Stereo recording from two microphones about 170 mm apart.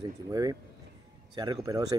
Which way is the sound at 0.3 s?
20° right (ahead or behind).